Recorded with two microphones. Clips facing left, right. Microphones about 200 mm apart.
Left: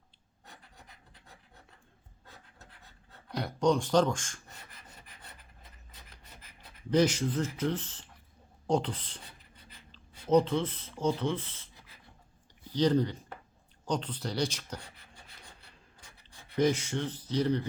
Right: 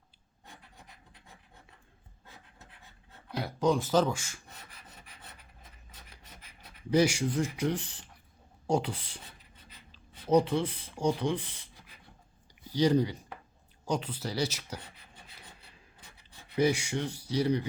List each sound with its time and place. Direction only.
3.2 s rub: 5° right (ahead or behind)
6.9 s speech: 10° right (ahead or behind)
12.7 s speech: 10° right (ahead or behind)
16.6 s speech: 10° right (ahead or behind)